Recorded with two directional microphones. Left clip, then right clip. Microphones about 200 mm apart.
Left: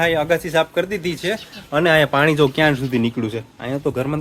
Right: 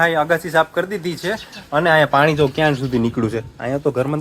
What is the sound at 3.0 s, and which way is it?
Speech, 10° right (ahead or behind).